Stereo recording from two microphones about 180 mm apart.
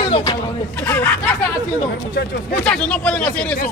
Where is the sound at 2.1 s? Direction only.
60° left (ahead or behind).